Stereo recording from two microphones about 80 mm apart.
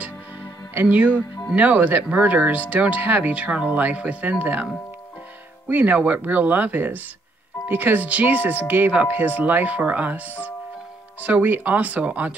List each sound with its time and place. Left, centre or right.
0.8 s speech: centre
5.7 s speech: right